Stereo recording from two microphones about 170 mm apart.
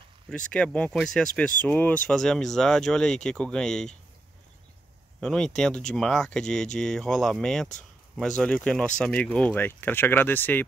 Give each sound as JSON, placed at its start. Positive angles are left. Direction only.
{"t": 0.3, "sound": "speech", "side_deg": 5}
{"t": 5.2, "sound": "speech", "side_deg": 5}